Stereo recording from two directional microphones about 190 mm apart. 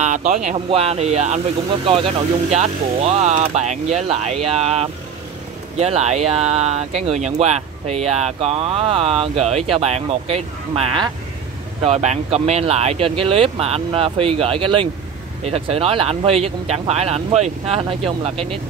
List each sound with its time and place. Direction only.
0.0 s speech: 40° right (ahead or behind)